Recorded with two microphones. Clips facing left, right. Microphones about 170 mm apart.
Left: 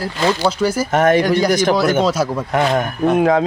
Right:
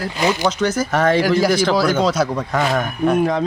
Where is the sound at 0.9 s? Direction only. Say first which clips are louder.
Left 3 dB; 20° left (ahead or behind).